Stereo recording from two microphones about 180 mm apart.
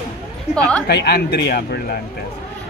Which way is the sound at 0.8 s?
65° left (ahead or behind).